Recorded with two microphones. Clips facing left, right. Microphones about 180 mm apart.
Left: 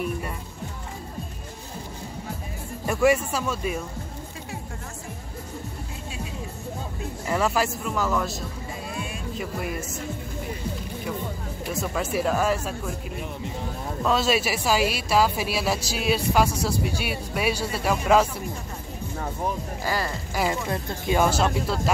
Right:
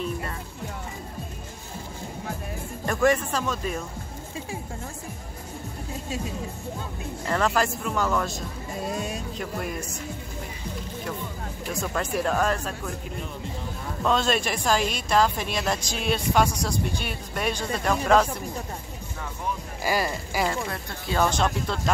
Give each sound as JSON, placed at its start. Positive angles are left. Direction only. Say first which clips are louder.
{"t": 2.8, "sound": "a woman's voice", "louder": "left 2 dB", "side_deg": 5}
{"t": 7.2, "sound": "speech", "louder": "even", "side_deg": 5}
{"t": 8.8, "sound": "music", "louder": "right 6 dB", "side_deg": -40}
{"t": 9.4, "sound": "speech", "louder": "left 2 dB", "side_deg": 5}
{"t": 11.7, "sound": "speech", "louder": "left 1 dB", "side_deg": 5}
{"t": 14.0, "sound": "a woman's voice", "louder": "left 1 dB", "side_deg": 5}
{"t": 19.8, "sound": "speech", "louder": "right 3 dB", "side_deg": -15}
{"t": 20.7, "sound": "a woman's voice", "louder": "left 4 dB", "side_deg": 10}